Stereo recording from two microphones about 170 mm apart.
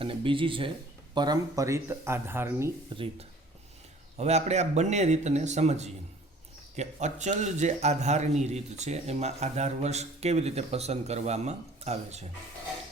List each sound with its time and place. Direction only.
0.0 s a man's voice: 30° right (ahead or behind); by 2.7 s 15° right (ahead or behind)
2.9 s a man's voice: 30° right (ahead or behind)